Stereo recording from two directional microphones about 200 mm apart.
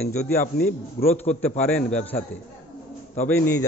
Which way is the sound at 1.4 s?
10° left (ahead or behind).